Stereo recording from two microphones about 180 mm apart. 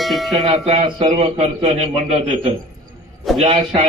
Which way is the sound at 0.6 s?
35° right (ahead or behind).